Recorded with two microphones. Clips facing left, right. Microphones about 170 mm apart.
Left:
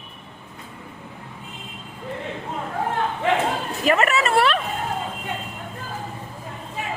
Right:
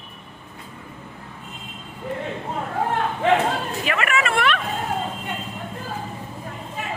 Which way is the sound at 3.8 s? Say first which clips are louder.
Left 5 dB; 40° left (ahead or behind).